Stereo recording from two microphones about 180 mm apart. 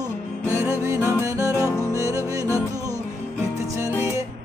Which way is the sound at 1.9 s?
20° right (ahead or behind).